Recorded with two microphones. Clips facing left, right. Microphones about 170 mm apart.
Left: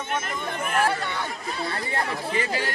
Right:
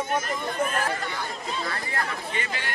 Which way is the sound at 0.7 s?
65° left (ahead or behind).